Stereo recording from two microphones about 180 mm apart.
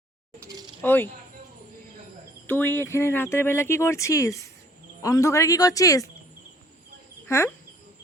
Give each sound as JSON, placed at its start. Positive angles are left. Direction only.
{"t": 0.8, "sound": "speech", "side_deg": 10}
{"t": 2.5, "sound": "speech", "side_deg": 10}
{"t": 7.3, "sound": "insect", "side_deg": 15}